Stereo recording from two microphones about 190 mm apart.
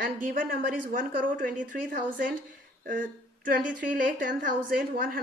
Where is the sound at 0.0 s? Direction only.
50° right (ahead or behind).